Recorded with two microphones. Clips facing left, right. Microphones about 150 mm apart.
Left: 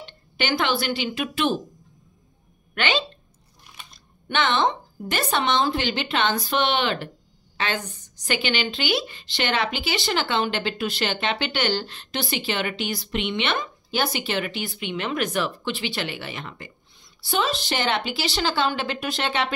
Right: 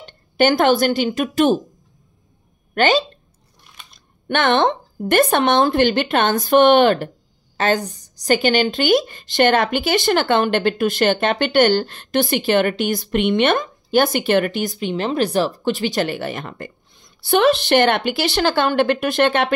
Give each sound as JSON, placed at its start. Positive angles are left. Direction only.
{"t": 0.0, "sound": "speech", "side_deg": -45}
{"t": 2.7, "sound": "a woman's voice", "side_deg": -40}
{"t": 4.3, "sound": "a woman's voice", "side_deg": -55}